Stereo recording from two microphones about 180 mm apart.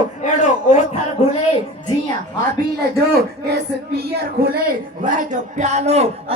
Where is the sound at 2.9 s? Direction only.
65° right (ahead or behind).